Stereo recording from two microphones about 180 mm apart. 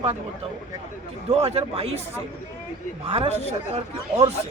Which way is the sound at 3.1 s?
35° right (ahead or behind).